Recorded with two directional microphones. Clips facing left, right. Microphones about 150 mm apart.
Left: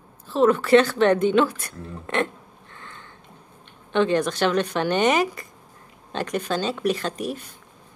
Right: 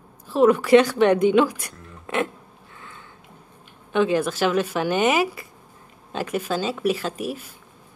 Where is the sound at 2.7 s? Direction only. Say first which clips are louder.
Even; 5° right (ahead or behind).